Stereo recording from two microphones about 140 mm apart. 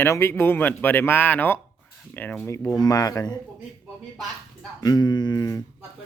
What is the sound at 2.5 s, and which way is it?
Speech, 25° left (ahead or behind).